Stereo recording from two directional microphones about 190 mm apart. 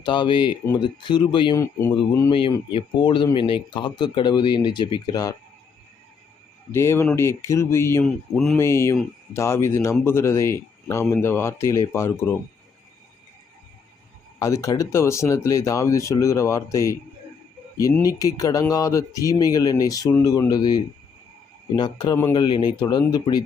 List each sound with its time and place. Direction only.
0.0 s speech: 25° left (ahead or behind)
2.3 s speech: 25° left (ahead or behind)
6.7 s speech: 15° left (ahead or behind)
14.3 s speech: 15° left (ahead or behind)
18.0 s speech: 20° left (ahead or behind)